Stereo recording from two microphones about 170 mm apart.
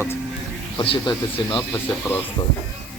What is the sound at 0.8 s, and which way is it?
Speech, 30° left (ahead or behind).